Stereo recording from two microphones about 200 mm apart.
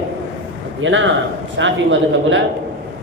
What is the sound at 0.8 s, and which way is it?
A man's voice, 70° right (ahead or behind).